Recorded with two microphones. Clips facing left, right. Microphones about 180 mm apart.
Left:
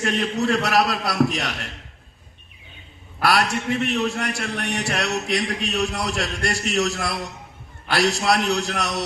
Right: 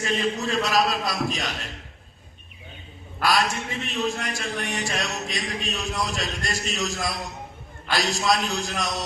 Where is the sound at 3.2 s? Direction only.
70° left (ahead or behind).